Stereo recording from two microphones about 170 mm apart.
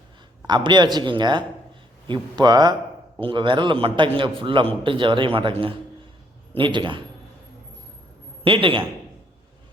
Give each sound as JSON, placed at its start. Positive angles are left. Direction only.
{"t": 0.4, "sound": "a man's voice", "side_deg": -25}
{"t": 8.4, "sound": "a man's voice", "side_deg": -30}